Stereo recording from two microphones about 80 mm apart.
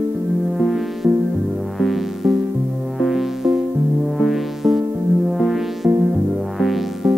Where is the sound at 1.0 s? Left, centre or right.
Right.